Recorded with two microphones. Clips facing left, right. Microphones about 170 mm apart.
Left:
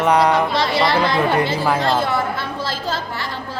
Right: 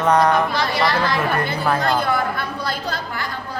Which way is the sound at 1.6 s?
25° left (ahead or behind).